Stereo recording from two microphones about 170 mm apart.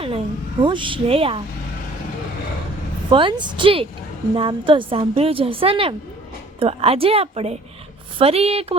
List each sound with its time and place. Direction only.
0.6 s a woman's voice: 30° right (ahead or behind)
3.1 s a woman's voice: 30° right (ahead or behind)